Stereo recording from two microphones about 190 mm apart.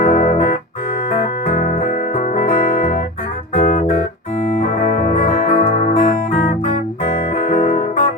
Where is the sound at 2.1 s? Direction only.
40° left (ahead or behind).